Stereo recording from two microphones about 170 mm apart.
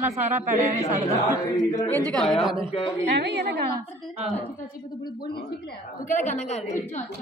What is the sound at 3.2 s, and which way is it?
Speech, 80° right.